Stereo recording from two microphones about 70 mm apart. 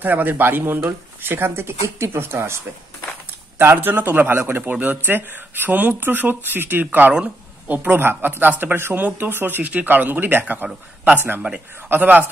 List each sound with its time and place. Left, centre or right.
0.0 s speech: right
11.9 s speech: right